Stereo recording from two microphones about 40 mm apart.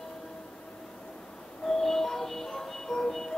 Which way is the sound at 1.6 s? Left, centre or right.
Centre.